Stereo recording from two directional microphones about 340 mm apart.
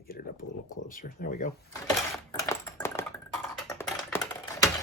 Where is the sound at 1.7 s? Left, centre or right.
Centre.